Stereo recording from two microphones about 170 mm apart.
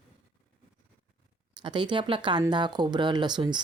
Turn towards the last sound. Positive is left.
turn(degrees=-25)  # may be behind; listen again after turning